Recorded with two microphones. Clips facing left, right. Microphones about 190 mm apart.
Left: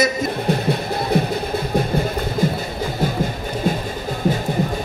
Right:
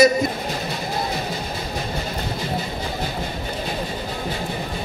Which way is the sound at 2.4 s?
50° left (ahead or behind).